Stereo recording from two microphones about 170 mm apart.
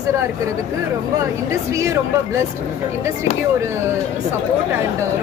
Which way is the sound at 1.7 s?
15° right (ahead or behind).